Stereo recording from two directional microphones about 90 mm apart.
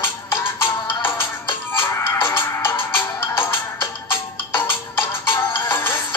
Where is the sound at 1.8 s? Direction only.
25° left (ahead or behind).